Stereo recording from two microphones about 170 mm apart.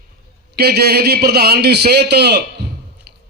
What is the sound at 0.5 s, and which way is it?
A man's voice, 70° right (ahead or behind).